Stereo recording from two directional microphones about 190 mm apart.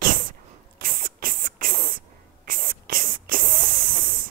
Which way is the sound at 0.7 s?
50° right (ahead or behind).